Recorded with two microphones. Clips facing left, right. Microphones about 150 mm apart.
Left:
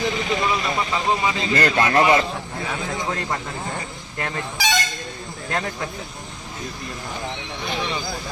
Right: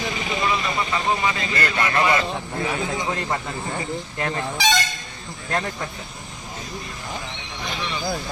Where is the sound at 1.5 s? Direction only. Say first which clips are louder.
Left 5 dB; 45° left (ahead or behind).